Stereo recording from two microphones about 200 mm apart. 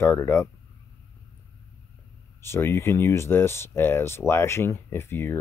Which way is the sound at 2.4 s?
10° left (ahead or behind).